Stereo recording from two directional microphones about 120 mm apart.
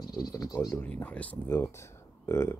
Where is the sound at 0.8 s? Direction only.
10° left (ahead or behind).